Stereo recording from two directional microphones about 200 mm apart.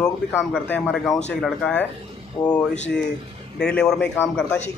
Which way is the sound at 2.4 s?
20° left (ahead or behind).